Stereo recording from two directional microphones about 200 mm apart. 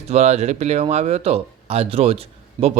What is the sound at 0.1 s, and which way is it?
Speech, 35° right (ahead or behind).